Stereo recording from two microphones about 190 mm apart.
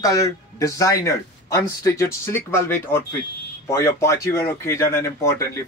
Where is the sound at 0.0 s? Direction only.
15° left (ahead or behind).